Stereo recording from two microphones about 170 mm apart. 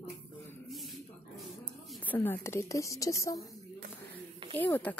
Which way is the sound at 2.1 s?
10° left (ahead or behind).